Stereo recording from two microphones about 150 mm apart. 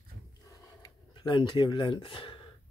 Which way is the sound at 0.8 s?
30° left (ahead or behind).